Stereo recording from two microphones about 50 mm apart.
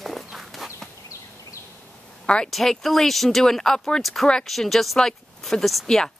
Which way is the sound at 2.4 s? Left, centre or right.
Centre.